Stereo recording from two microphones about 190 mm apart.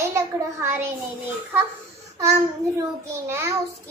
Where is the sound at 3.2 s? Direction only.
15° right (ahead or behind).